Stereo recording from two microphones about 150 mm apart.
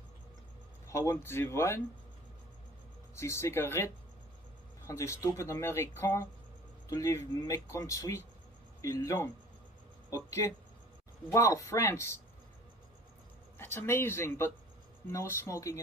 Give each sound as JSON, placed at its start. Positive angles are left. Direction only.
{"t": 0.8, "sound": "speech", "side_deg": 20}
{"t": 3.2, "sound": "speech", "side_deg": 20}
{"t": 13.6, "sound": "speech", "side_deg": 15}